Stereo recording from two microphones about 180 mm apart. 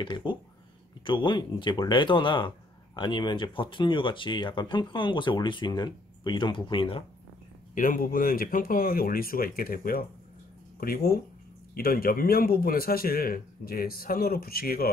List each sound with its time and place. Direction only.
0.0 s speech: 25° left (ahead or behind)
7.7 s a man's voice: 50° left (ahead or behind)